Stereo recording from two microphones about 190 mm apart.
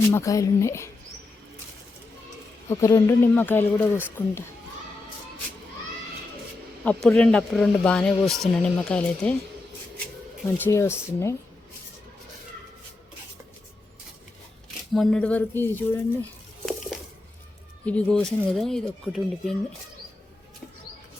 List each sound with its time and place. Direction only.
0.1 s speech: 15° left (ahead or behind)
2.6 s speech: 15° left (ahead or behind)
6.8 s speech: 5° left (ahead or behind)
10.6 s speech: 15° left (ahead or behind)
14.9 s speech: 5° left (ahead or behind)
17.8 s speech: 5° left (ahead or behind)